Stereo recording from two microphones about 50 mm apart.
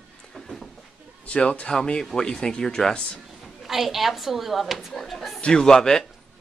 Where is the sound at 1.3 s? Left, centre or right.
Left.